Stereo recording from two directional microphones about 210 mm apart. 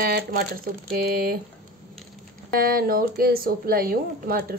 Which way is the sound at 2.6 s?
45° right (ahead or behind).